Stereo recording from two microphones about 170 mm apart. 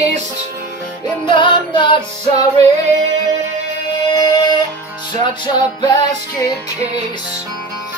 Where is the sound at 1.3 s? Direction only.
25° left (ahead or behind).